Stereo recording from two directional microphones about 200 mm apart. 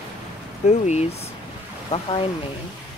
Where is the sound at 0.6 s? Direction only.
35° left (ahead or behind).